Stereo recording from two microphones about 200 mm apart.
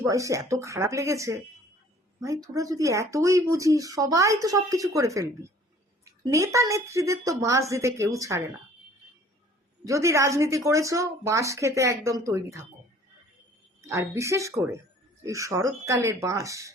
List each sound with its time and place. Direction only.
0.0 s a woman's voice: 15° right (ahead or behind)
9.8 s a woman's voice: 15° right (ahead or behind)
13.8 s a woman's voice: 15° right (ahead or behind)